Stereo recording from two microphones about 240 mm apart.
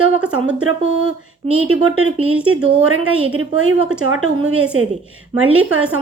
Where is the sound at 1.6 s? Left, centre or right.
Right.